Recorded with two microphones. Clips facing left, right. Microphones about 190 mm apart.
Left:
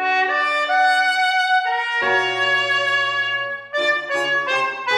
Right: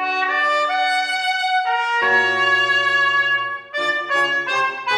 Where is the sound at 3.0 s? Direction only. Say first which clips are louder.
Right 2 dB; 20° left (ahead or behind).